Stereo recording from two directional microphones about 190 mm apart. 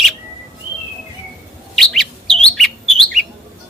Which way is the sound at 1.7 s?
Centre (ahead or behind).